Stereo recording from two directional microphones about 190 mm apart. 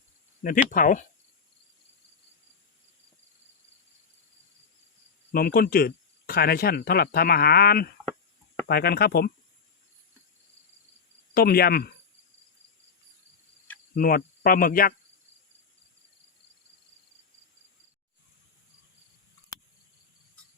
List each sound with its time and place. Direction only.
0.7 s speech: 45° left (ahead or behind)
5.3 s speech: 50° left (ahead or behind)
11.3 s speech: 55° left (ahead or behind)
13.9 s speech: 50° left (ahead or behind)